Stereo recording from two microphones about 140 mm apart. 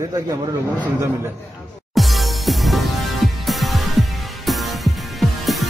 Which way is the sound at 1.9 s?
Centre (ahead or behind).